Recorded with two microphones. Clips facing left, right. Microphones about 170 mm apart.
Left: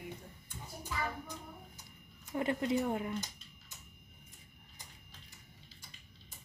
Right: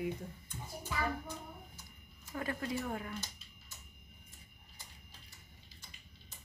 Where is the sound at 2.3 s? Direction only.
20° left (ahead or behind).